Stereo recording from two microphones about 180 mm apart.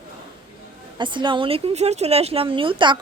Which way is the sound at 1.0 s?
25° right (ahead or behind).